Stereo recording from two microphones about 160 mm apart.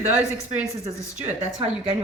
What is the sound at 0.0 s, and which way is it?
Speech, 10° right (ahead or behind).